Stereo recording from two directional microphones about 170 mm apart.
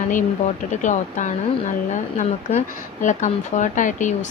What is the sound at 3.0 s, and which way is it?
A woman's voice, 45° left (ahead or behind).